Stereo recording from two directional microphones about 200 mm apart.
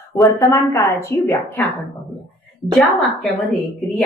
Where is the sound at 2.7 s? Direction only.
Centre (ahead or behind).